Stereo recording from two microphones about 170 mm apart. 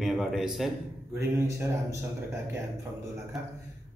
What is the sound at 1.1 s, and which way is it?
Speech, 15° right (ahead or behind).